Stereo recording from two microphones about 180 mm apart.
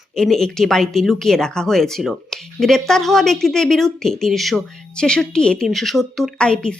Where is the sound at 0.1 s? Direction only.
5° left (ahead or behind).